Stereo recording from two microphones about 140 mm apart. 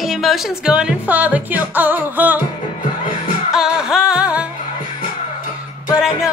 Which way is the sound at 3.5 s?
5° right (ahead or behind).